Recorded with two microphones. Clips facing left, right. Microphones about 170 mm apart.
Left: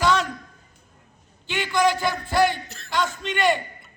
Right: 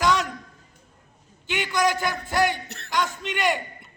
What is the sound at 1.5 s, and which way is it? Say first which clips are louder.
A man's voice: left 2 dB; 15° right (ahead or behind).